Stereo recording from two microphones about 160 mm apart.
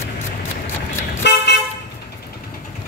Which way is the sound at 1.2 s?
90° left.